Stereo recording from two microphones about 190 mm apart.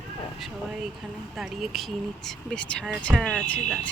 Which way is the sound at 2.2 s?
5° left (ahead or behind).